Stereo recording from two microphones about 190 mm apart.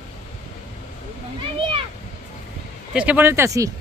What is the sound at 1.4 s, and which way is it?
Children playing, 30° right (ahead or behind).